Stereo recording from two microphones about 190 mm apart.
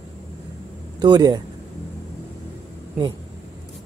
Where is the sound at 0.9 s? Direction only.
20° right (ahead or behind).